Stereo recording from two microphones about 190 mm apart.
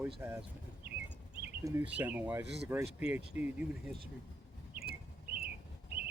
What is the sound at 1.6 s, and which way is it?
Speech, 10° right (ahead or behind).